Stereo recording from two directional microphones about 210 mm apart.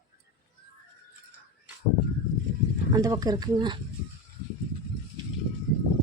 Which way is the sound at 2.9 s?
15° right (ahead or behind).